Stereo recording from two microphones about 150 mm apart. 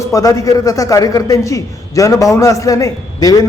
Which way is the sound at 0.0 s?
20° left (ahead or behind).